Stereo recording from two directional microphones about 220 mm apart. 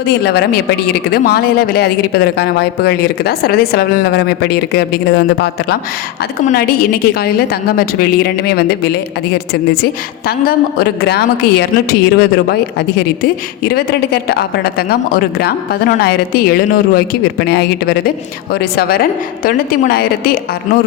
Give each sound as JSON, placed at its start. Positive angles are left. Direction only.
{"t": 0.1, "sound": "a woman's voice", "side_deg": 50}